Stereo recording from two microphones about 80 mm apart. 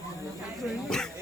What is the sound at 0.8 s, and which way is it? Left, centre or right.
Dog, centre.